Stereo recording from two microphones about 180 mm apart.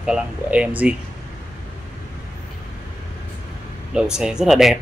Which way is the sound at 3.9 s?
5° right (ahead or behind).